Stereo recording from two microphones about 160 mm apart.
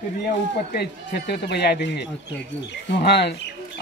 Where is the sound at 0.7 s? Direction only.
85° left.